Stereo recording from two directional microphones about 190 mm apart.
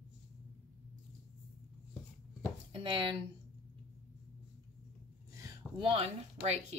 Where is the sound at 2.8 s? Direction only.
25° right (ahead or behind).